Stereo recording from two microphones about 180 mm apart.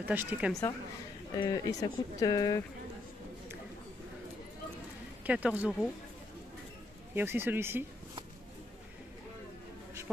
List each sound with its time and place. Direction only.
0.0 s speech: 10° right (ahead or behind)
1.3 s speech: 20° left (ahead or behind)
5.2 s speech: 5° right (ahead or behind)
7.2 s speech: 10° right (ahead or behind)